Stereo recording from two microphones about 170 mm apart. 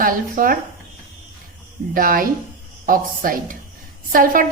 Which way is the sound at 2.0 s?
55° right (ahead or behind).